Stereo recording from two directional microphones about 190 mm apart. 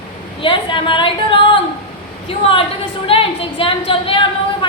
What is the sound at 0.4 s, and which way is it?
Speech, 25° left (ahead or behind).